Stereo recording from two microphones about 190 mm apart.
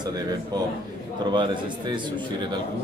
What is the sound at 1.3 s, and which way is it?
Speech, 25° right (ahead or behind).